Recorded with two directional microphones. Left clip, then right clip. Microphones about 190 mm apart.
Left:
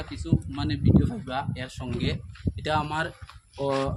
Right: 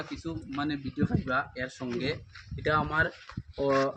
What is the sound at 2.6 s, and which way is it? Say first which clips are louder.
Speech: even; 70° left (ahead or behind).